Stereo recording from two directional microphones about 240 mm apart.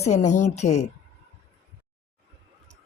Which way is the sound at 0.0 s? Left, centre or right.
Left.